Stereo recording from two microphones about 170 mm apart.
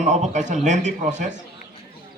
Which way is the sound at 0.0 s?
45° right (ahead or behind).